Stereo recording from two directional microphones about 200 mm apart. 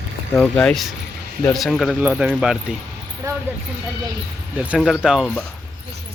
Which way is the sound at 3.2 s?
15° right (ahead or behind).